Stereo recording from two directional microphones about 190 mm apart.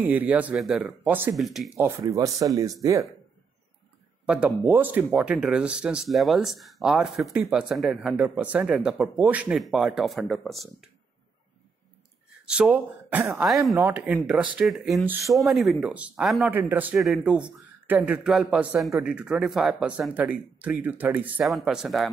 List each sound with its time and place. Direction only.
0.0 s speech: 10° right (ahead or behind)
1.8 s speech: 15° right (ahead or behind)
4.3 s speech: 5° right (ahead or behind)
12.4 s speech: 5° right (ahead or behind)